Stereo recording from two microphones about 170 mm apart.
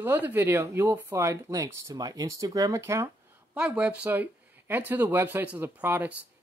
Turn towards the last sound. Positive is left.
turn(degrees=-10)  # may be behind; listen again after turning